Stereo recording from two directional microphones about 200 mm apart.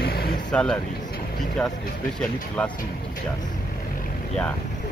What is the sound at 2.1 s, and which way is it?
Speech, 5° left (ahead or behind).